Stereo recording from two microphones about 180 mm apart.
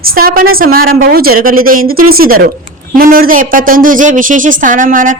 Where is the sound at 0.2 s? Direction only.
55° right (ahead or behind).